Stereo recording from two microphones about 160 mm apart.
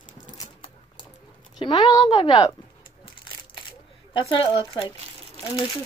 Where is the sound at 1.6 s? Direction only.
25° left (ahead or behind).